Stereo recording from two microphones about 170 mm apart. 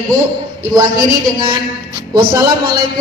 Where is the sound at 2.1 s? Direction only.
20° right (ahead or behind).